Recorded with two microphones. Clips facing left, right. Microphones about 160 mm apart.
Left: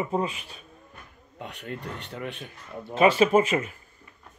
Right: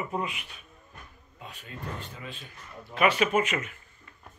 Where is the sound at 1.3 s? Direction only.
70° left (ahead or behind).